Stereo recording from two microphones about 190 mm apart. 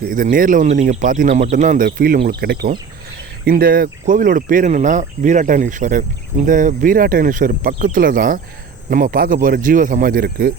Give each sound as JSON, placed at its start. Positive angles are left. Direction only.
{"t": 0.0, "sound": "speech", "side_deg": -45}